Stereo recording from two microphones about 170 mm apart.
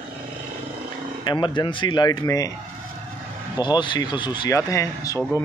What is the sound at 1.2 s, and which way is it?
Speech, 25° left (ahead or behind).